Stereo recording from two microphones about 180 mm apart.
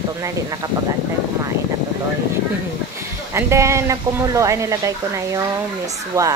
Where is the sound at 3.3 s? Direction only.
15° right (ahead or behind).